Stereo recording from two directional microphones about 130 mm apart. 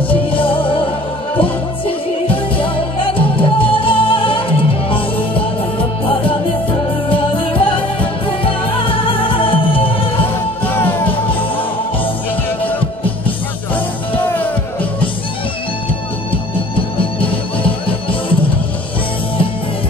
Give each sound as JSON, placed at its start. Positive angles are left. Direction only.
{"t": 0.1, "sound": "music", "side_deg": 45}
{"t": 10.6, "sound": "music", "side_deg": 15}
{"t": 14.1, "sound": "music", "side_deg": 15}
{"t": 16.3, "sound": "music", "side_deg": 45}